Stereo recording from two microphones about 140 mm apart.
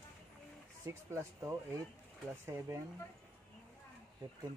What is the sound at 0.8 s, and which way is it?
Speech, 20° right (ahead or behind).